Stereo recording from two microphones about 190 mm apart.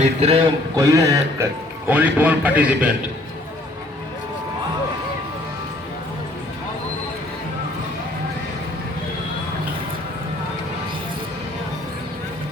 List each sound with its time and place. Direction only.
0.0 s a man's voice: 30° right (ahead or behind)
0.8 s a man's voice: 20° right (ahead or behind)